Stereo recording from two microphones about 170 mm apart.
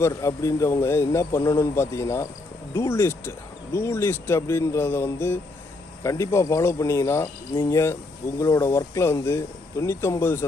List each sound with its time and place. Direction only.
0.0 s speech: 15° left (ahead or behind)